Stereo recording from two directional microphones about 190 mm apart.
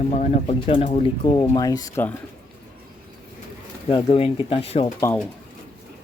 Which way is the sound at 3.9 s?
30° left (ahead or behind).